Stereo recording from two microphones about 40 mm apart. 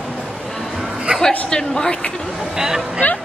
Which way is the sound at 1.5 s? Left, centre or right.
Centre.